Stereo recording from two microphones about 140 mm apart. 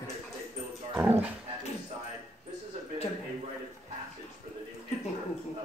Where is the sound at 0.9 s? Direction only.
10° right (ahead or behind).